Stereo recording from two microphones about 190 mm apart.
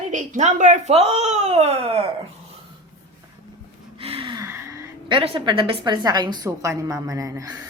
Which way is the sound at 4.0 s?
30° right (ahead or behind).